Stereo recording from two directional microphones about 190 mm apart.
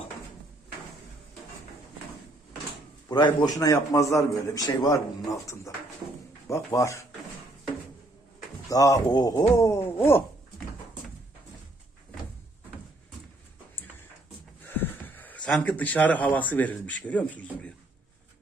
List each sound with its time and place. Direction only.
3.1 s a man's voice: 25° left (ahead or behind)
8.7 s speech: 20° left (ahead or behind)
14.8 s speech: 10° left (ahead or behind)